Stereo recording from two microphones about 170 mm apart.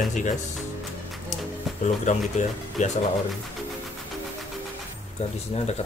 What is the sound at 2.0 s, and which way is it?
Speech, 45° left (ahead or behind).